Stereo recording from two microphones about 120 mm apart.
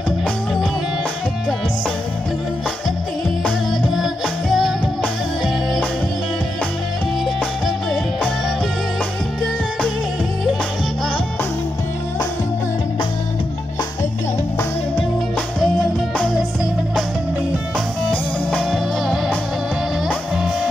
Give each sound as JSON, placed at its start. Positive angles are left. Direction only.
{"t": 3.4, "sound": "music", "side_deg": 0}
{"t": 15.6, "sound": "music", "side_deg": 0}
{"t": 18.1, "sound": "music", "side_deg": 5}